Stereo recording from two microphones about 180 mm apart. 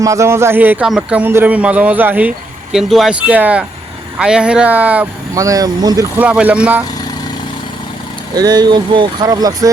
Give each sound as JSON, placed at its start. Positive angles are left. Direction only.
{"t": 0.0, "sound": "speech", "side_deg": -15}
{"t": 6.1, "sound": "speech", "side_deg": -10}
{"t": 8.4, "sound": "speech", "side_deg": -25}